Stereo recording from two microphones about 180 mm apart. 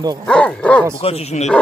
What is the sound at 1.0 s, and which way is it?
Speech, 35° left (ahead or behind).